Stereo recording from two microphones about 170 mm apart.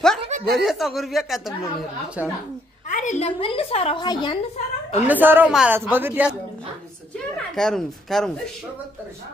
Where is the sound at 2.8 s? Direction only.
45° left (ahead or behind); by 4.4 s 25° left (ahead or behind).